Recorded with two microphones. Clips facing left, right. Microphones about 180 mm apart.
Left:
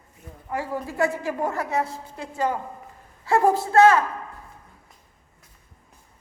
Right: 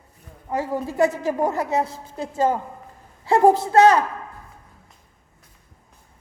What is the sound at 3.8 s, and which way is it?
Speech, 35° right (ahead or behind).